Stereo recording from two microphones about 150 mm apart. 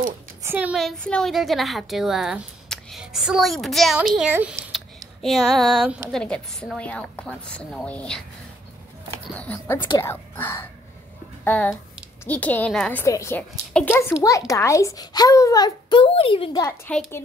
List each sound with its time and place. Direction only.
0.4 s a woman's voice: 15° right (ahead or behind)
0.7 s a woman's voice: centre (ahead or behind)
4.3 s speech: 10° right (ahead or behind)
4.7 s a sound: centre (ahead or behind)
6.1 s a woman's voice: 5° left (ahead or behind)
9.4 s a woman's voice: 10° left (ahead or behind)
13.0 s a child's voice: 20° left (ahead or behind); by 16.4 s 40° left (ahead or behind)
16.5 s a woman's voice: 15° left (ahead or behind)